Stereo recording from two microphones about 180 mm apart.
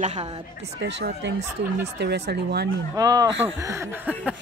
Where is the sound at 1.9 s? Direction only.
65° right (ahead or behind).